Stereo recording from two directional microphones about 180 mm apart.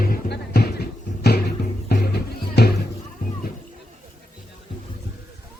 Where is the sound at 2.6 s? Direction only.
65° left (ahead or behind).